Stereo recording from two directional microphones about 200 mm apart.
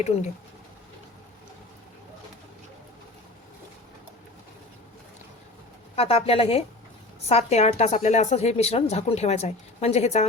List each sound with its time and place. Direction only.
6.0 s a woman's voice: 30° left (ahead or behind)